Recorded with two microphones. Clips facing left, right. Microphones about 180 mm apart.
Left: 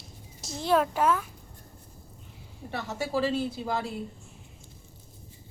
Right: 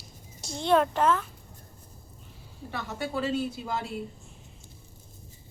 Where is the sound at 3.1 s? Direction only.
30° left (ahead or behind).